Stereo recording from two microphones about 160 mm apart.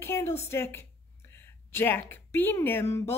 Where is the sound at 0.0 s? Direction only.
15° left (ahead or behind).